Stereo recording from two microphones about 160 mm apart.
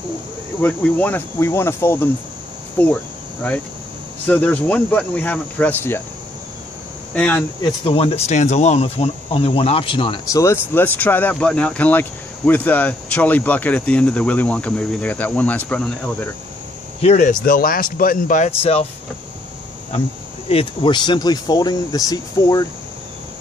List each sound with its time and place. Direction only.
0.6 s speech: 10° left (ahead or behind)
4.3 s speech: 10° left (ahead or behind)
7.2 s speech: 10° left (ahead or behind)
7.6 s speech: 35° left (ahead or behind)
10.4 s speech: 15° left (ahead or behind)
17.0 s speech: 50° left (ahead or behind)
18.6 s speech: 40° left (ahead or behind)
20.4 s speech: 35° left (ahead or behind)